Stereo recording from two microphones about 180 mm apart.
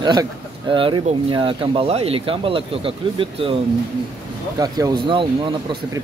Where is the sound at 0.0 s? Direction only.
25° right (ahead or behind).